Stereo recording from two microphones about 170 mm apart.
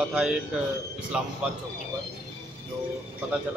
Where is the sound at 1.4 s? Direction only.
5° right (ahead or behind).